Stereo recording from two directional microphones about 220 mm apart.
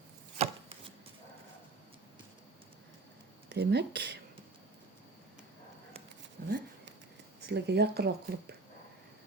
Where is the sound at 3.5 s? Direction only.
50° right (ahead or behind).